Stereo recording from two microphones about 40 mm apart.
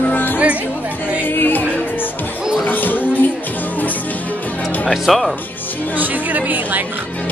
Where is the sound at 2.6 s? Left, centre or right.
Left.